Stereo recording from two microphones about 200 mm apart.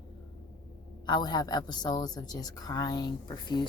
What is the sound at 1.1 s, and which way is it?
A woman's voice, 20° left (ahead or behind).